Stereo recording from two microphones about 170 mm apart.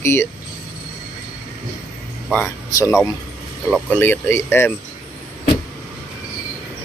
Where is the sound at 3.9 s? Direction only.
15° left (ahead or behind).